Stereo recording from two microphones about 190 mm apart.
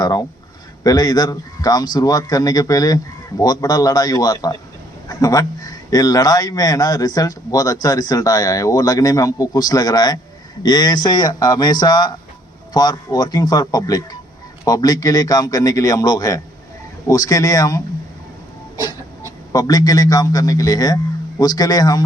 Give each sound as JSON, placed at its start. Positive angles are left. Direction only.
{"t": 0.0, "sound": "a man's voice", "side_deg": 20}
{"t": 19.5, "sound": "a man's voice", "side_deg": 20}